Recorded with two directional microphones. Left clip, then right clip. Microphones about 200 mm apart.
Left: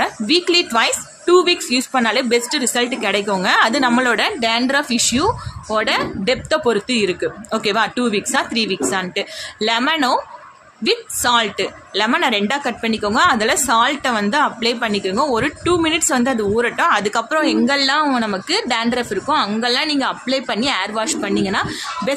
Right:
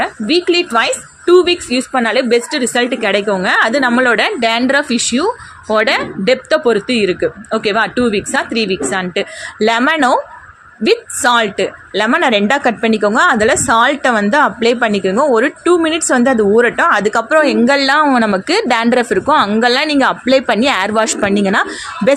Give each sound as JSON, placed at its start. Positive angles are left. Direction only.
{"t": 0.0, "sound": "a woman's voice", "side_deg": -10}